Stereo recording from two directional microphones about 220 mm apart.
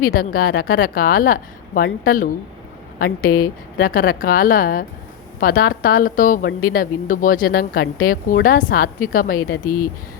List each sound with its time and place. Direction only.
0.0 s speech: 40° left (ahead or behind)